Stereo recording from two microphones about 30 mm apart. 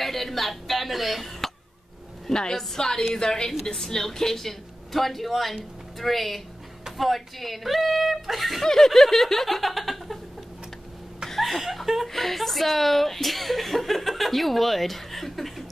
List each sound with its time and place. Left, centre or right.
0.0 s a sound: centre
2.5 s a woman's voice: centre
8.6 s speech: centre
11.4 s speech: centre
12.1 s speech: centre